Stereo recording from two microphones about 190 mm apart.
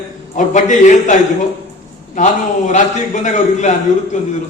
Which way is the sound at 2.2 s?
40° left (ahead or behind).